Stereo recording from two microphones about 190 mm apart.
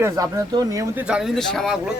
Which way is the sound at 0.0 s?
15° right (ahead or behind).